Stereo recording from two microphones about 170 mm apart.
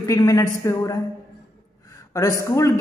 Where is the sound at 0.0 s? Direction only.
20° left (ahead or behind).